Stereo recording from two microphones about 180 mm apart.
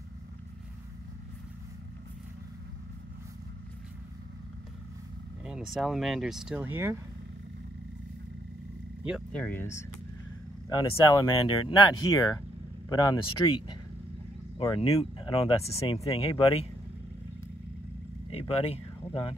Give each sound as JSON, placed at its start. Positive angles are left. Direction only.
{"t": 5.4, "sound": "speech", "side_deg": 0}
{"t": 9.0, "sound": "speech", "side_deg": -5}
{"t": 9.4, "sound": "speech", "side_deg": 10}
{"t": 14.6, "sound": "speech", "side_deg": 30}
{"t": 18.3, "sound": "speech", "side_deg": 35}